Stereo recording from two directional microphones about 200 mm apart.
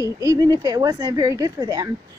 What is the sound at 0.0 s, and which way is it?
A woman's voice, 15° right (ahead or behind).